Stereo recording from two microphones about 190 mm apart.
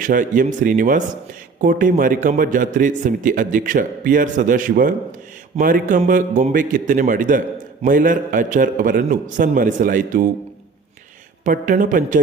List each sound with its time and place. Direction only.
0.0 s a man's voice: 45° right (ahead or behind)
11.4 s a man's voice: 45° right (ahead or behind)